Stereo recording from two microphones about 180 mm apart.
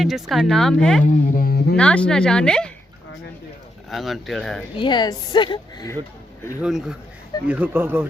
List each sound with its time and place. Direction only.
0.0 s speech: centre (ahead or behind)
1.0 s speech: 50° left (ahead or behind)
1.7 s speech: 5° left (ahead or behind)
3.8 s speech: centre (ahead or behind)
4.8 s speech: 25° left (ahead or behind)
6.6 s speech: 5° right (ahead or behind)